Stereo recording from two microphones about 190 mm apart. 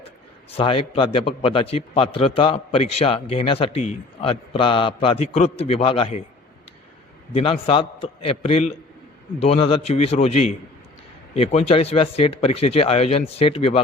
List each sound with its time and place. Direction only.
0.5 s a man's voice: 30° left (ahead or behind)
7.3 s a man's voice: 30° left (ahead or behind)
11.7 s speech: 30° left (ahead or behind)